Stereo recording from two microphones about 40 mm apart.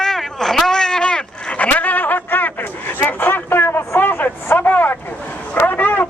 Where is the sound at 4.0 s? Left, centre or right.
Left.